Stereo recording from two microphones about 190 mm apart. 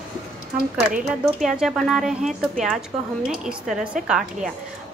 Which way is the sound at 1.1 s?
Centre (ahead or behind).